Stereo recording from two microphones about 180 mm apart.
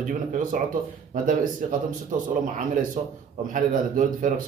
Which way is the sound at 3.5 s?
50° right (ahead or behind).